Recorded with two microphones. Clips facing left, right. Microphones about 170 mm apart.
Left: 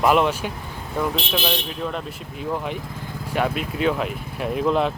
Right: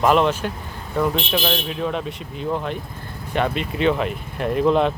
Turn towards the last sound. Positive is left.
turn(degrees=0)  # may be behind; listen again after turning